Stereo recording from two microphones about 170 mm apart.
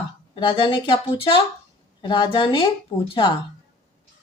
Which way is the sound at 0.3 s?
30° left (ahead or behind).